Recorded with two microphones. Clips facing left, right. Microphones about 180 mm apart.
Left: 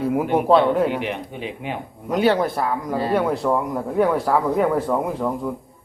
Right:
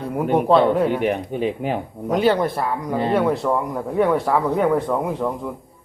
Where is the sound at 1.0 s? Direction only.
45° right (ahead or behind).